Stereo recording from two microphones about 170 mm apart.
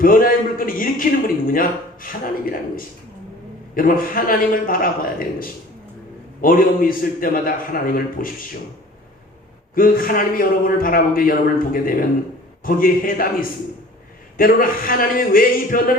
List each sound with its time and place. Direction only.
0.0 s a man's voice: 55° left (ahead or behind)
9.7 s a man's voice: 55° left (ahead or behind)